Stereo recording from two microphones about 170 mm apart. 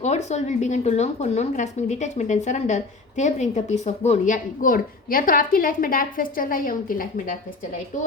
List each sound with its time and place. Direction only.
0.0 s a woman's voice: 40° left (ahead or behind)